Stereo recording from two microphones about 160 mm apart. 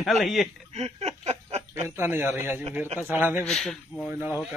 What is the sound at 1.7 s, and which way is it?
A man's voice, 15° right (ahead or behind).